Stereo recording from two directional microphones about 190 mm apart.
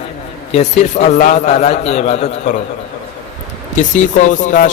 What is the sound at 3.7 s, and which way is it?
Speech, 40° left (ahead or behind).